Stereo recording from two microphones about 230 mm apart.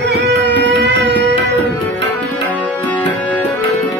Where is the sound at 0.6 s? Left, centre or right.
Right.